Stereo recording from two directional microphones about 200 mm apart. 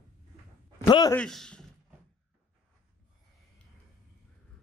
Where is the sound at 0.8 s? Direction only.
20° left (ahead or behind).